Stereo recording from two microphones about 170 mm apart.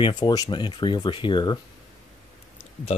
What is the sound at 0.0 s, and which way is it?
Speech, 25° left (ahead or behind).